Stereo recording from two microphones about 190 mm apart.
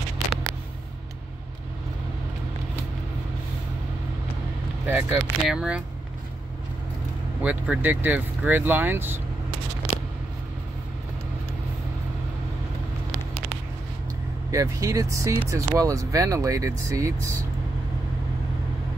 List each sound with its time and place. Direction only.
4.8 s speech: 5° right (ahead or behind)
7.4 s speech: 5° right (ahead or behind)
14.5 s speech: 15° right (ahead or behind)